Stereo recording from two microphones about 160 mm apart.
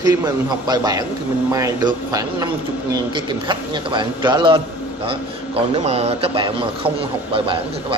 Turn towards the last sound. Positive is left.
turn(degrees=-35)  # may be behind; listen again after turning